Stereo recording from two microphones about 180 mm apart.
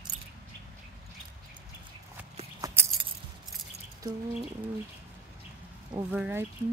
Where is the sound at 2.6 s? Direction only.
15° right (ahead or behind).